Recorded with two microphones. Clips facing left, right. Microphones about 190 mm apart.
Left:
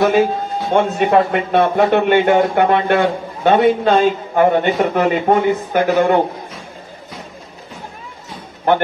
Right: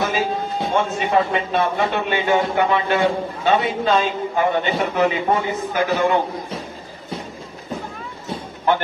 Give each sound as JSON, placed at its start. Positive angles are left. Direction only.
{"t": 0.0, "sound": "a man's voice", "side_deg": 60}
{"t": 8.7, "sound": "a man's voice", "side_deg": 55}